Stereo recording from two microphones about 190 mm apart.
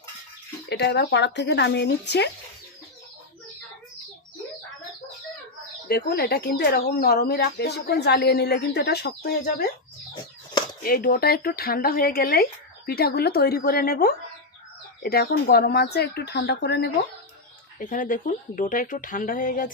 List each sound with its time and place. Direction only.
0.7 s speech: 60° left (ahead or behind)
5.9 s speech: 55° left (ahead or behind)
10.8 s speech: 50° left (ahead or behind)
17.7 s speech: 45° left (ahead or behind)